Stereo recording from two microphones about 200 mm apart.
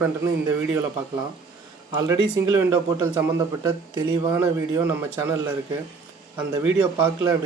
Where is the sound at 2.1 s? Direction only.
15° right (ahead or behind).